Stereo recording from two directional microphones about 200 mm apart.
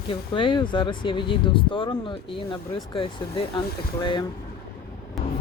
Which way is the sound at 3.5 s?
20° left (ahead or behind).